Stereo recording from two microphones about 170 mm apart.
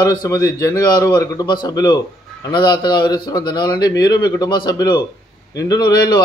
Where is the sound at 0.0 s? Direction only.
20° left (ahead or behind).